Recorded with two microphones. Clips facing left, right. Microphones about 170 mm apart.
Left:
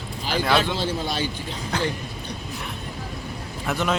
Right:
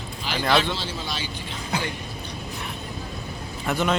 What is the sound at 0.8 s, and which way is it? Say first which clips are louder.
Speech: left 6 dB; 50° left (ahead or behind).